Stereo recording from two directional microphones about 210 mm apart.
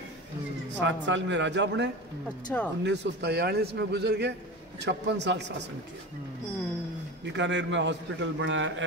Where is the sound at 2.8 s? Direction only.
50° right (ahead or behind).